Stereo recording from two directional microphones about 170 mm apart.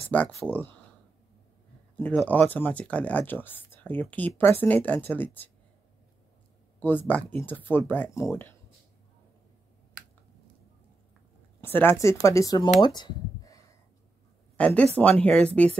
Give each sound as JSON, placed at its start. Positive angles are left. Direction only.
{"t": 0.1, "sound": "speech", "side_deg": 10}
{"t": 2.0, "sound": "speech", "side_deg": 10}
{"t": 6.8, "sound": "speech", "side_deg": 10}
{"t": 11.6, "sound": "speech", "side_deg": 10}
{"t": 14.6, "sound": "speech", "side_deg": 5}